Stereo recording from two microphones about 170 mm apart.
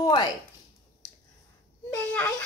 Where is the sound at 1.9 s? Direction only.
10° left (ahead or behind).